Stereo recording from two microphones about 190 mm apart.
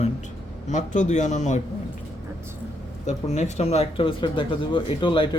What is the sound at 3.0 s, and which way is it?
Speech, 35° left (ahead or behind).